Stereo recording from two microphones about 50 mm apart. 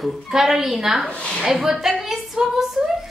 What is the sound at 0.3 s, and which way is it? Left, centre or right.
A woman's voice, centre.